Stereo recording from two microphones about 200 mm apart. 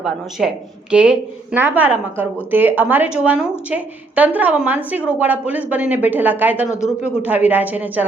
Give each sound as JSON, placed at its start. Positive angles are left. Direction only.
{"t": 0.0, "sound": "a woman's voice", "side_deg": 0}